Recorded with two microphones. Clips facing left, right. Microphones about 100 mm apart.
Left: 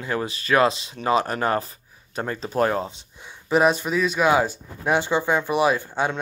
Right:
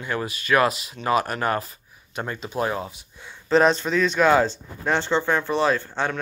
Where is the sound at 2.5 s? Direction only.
50° left (ahead or behind).